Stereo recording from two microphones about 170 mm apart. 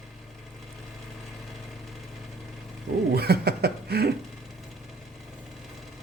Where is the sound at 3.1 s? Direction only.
70° right (ahead or behind).